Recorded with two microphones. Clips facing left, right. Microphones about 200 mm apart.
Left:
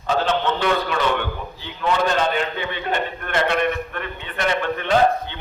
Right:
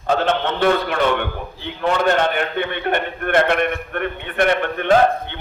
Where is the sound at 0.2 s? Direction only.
55° right (ahead or behind).